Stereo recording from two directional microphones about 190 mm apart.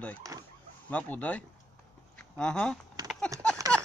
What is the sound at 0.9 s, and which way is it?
Speech, 10° left (ahead or behind).